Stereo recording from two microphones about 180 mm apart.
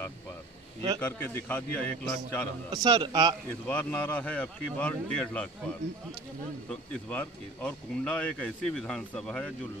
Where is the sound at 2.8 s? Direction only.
25° right (ahead or behind).